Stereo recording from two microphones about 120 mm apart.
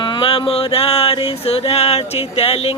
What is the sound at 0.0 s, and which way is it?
Music, 40° left (ahead or behind).